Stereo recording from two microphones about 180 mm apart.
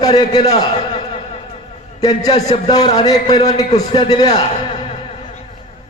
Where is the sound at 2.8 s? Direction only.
25° left (ahead or behind).